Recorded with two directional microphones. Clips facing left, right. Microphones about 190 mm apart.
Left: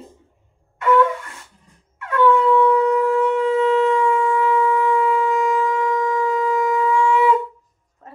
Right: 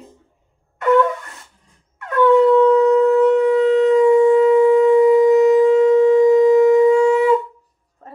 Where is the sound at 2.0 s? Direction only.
40° right (ahead or behind).